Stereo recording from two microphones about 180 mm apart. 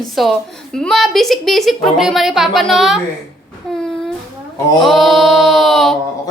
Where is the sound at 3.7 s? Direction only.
5° left (ahead or behind).